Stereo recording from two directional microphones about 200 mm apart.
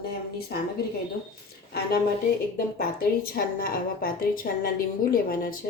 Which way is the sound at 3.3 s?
45° left (ahead or behind).